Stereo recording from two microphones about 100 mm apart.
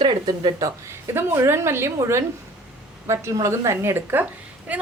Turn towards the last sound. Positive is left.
turn(degrees=-15)  # may be behind; listen again after turning